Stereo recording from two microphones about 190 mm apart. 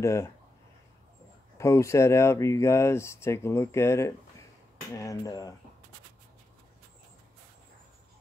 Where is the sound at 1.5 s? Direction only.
15° left (ahead or behind).